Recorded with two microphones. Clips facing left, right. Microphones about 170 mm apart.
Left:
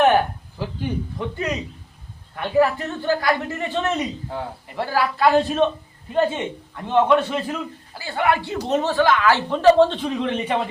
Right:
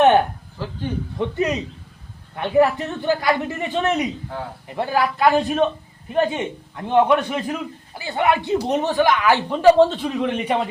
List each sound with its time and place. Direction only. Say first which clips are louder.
0.6 s speech: left 1 dB; 15° left (ahead or behind)
1.2 s a man's voice: right 7 dB; 20° right (ahead or behind)